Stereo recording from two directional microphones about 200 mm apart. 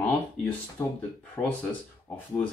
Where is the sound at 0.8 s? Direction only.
10° left (ahead or behind).